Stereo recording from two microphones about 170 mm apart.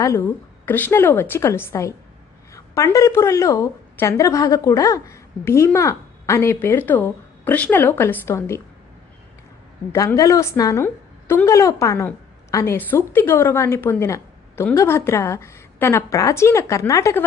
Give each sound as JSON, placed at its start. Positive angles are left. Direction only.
{"t": 0.0, "sound": "a woman's voice", "side_deg": 20}
{"t": 9.9, "sound": "a woman's voice", "side_deg": 15}